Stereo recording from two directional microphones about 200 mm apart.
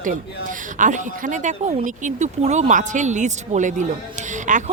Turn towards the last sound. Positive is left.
turn(degrees=-40)  # may be behind; listen again after turning